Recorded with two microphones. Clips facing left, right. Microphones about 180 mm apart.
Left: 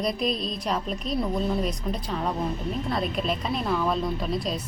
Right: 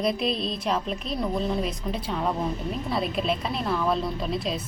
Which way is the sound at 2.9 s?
Centre (ahead or behind).